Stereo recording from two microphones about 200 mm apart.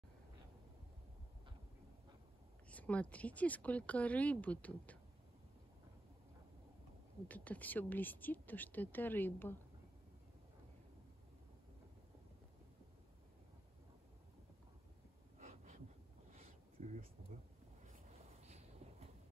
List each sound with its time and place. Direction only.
2.7 s speech: 5° left (ahead or behind)
7.2 s speech: 10° left (ahead or behind)
15.4 s a sound: 35° right (ahead or behind)